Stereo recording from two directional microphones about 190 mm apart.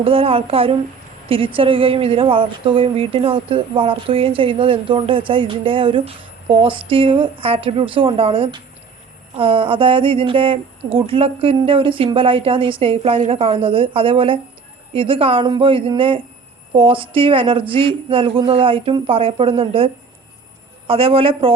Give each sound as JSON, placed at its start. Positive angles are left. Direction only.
{"t": 0.0, "sound": "speech", "side_deg": -30}